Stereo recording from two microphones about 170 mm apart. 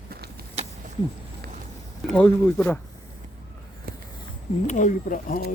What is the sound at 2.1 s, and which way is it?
Speech, 10° left (ahead or behind).